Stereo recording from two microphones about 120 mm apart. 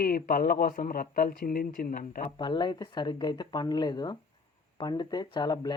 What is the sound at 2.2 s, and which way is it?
Speech, 45° left (ahead or behind).